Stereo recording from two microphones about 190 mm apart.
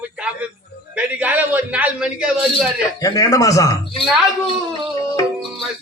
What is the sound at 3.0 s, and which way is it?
A man's voice, 20° left (ahead or behind).